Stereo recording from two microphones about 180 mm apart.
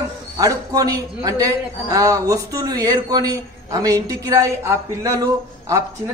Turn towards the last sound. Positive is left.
turn(degrees=-20)  # may be behind; listen again after turning